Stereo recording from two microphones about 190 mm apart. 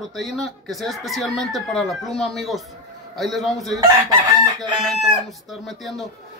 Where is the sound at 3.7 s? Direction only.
20° right (ahead or behind).